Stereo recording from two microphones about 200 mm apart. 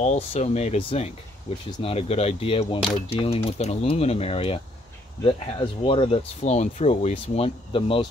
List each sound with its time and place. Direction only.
0.0 s speech: 35° left (ahead or behind)